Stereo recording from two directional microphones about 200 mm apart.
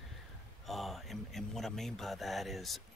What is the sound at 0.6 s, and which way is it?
A man's voice, centre (ahead or behind).